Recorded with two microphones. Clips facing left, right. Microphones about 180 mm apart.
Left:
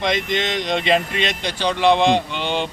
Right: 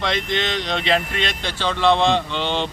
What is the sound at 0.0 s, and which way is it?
A man's voice, 15° left (ahead or behind).